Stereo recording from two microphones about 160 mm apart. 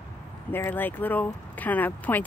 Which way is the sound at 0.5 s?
10° left (ahead or behind).